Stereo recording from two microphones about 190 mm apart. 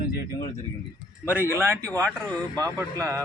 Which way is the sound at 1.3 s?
10° right (ahead or behind).